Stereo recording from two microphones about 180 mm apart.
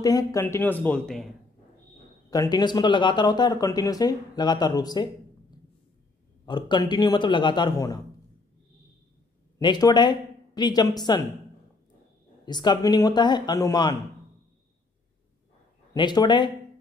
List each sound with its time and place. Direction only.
0.0 s speech: 20° left (ahead or behind); by 1.3 s 5° left (ahead or behind)
2.3 s speech: 20° left (ahead or behind)
6.4 s speech: 25° left (ahead or behind)
9.6 s speech: 25° left (ahead or behind)
12.4 s speech: 25° left (ahead or behind)
15.9 s speech: 25° left (ahead or behind)